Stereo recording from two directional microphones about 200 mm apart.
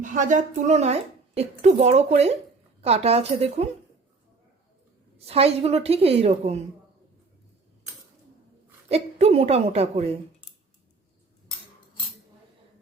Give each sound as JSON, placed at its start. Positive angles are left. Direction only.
{"t": 0.0, "sound": "a woman's voice", "side_deg": -40}
{"t": 5.1, "sound": "a woman's voice", "side_deg": -30}
{"t": 8.9, "sound": "a woman's voice", "side_deg": -30}